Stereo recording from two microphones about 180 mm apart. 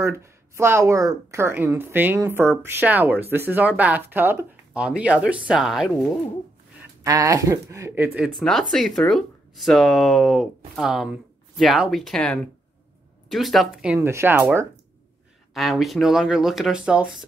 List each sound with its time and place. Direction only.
0.0 s speech: 15° right (ahead or behind)
7.0 s speech: 20° right (ahead or behind)
8.2 s speech: centre (ahead or behind)
13.9 s speech: 15° right (ahead or behind)
15.5 s speech: centre (ahead or behind)